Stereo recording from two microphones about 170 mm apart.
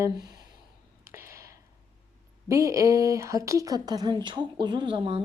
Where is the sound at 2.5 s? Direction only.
20° right (ahead or behind).